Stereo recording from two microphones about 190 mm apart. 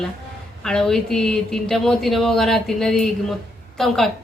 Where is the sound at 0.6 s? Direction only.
5° left (ahead or behind).